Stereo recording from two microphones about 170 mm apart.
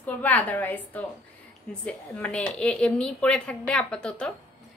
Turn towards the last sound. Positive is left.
turn(degrees=5)  # may be behind; listen again after turning